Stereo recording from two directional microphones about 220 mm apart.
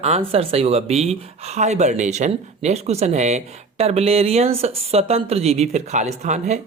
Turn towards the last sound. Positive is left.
turn(degrees=-30)  # may be behind; listen again after turning